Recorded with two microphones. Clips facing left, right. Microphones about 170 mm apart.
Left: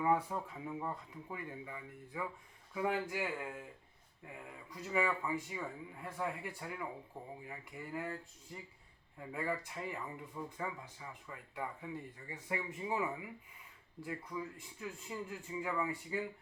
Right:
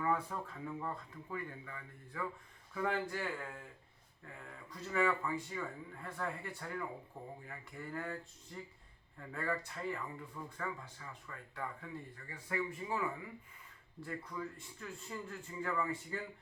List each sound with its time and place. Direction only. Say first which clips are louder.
0.0 s speech: left 3 dB; 15° left (ahead or behind)